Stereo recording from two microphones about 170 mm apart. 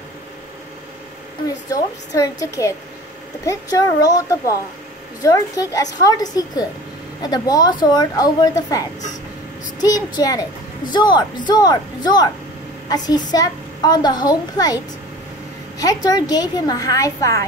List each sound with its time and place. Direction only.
1.7 s a woman's voice: 20° left (ahead or behind)
15.8 s a woman's voice: 20° left (ahead or behind)